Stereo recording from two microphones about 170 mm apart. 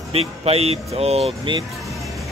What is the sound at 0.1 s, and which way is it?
Speech, 35° right (ahead or behind).